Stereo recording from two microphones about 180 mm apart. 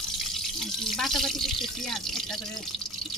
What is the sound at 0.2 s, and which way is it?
Speech, centre (ahead or behind).